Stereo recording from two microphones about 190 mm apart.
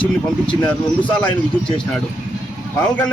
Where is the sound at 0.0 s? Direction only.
25° left (ahead or behind).